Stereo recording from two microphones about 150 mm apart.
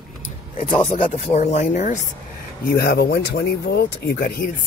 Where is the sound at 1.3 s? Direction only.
50° left (ahead or behind).